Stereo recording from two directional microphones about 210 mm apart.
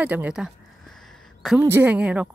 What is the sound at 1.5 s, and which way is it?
Speech, 10° right (ahead or behind).